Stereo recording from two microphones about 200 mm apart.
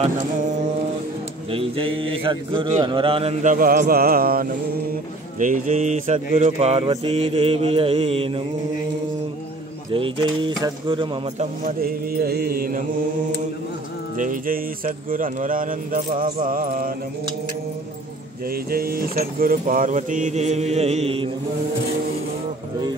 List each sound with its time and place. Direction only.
1.5 s mantra: 25° right (ahead or behind)
3.5 s speech: 45° right (ahead or behind)
5.4 s mantra: 40° right (ahead or behind)
9.9 s mantra: 25° right (ahead or behind)
11.3 s speech: 45° right (ahead or behind)
14.1 s speech: 40° right (ahead or behind)
18.5 s speech: 50° right (ahead or behind); by 21.3 s 30° right (ahead or behind)